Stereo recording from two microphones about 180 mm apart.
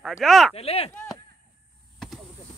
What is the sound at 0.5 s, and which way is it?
Speech, 35° left (ahead or behind).